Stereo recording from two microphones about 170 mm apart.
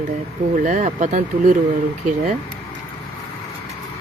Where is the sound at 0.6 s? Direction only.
45° right (ahead or behind).